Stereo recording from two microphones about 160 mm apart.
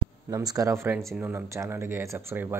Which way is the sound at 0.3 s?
25° right (ahead or behind).